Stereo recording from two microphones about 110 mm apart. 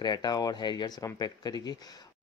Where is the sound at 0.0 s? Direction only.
40° left (ahead or behind).